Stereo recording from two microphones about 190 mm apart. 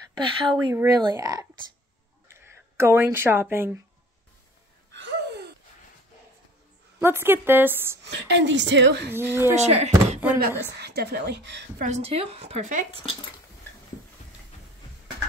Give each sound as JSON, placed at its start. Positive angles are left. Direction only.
{"t": 0.2, "sound": "speech", "side_deg": -25}
{"t": 4.9, "sound": "gasp", "side_deg": -65}
{"t": 7.0, "sound": "a woman's voice", "side_deg": -10}
{"t": 8.0, "sound": "a woman's voice", "side_deg": -60}
{"t": 9.1, "sound": "a woman's voice", "side_deg": -10}
{"t": 9.6, "sound": "a woman's voice", "side_deg": -35}
{"t": 10.7, "sound": "speech", "side_deg": -60}
{"t": 11.8, "sound": "a woman's voice", "side_deg": -35}